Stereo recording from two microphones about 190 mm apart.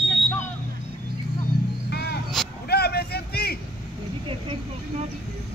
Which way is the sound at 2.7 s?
55° left (ahead or behind).